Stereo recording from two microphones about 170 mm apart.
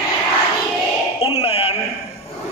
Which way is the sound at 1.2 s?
35° left (ahead or behind).